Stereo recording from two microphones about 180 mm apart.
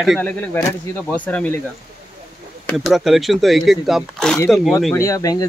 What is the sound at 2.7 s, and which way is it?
Speech, centre (ahead or behind).